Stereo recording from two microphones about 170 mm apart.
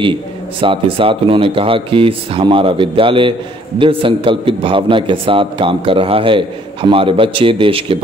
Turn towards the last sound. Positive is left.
turn(degrees=-30)  # may be behind; listen again after turning